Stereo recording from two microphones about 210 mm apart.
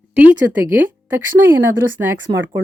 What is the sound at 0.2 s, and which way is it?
Speech, 10° right (ahead or behind).